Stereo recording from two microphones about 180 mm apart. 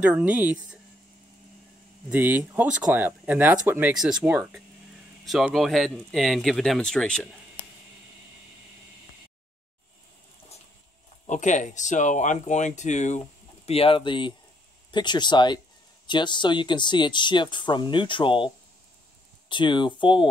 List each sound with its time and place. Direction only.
0.0 s speech: 10° right (ahead or behind)
2.0 s speech: 10° right (ahead or behind)
11.2 s speech: 45° left (ahead or behind); by 18.5 s 25° left (ahead or behind)
19.5 s speech: 25° left (ahead or behind)